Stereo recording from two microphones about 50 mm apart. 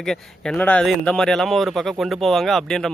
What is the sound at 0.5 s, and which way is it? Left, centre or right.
Speech, left.